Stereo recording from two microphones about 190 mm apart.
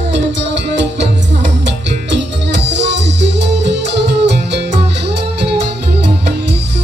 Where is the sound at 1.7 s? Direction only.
65° right (ahead or behind).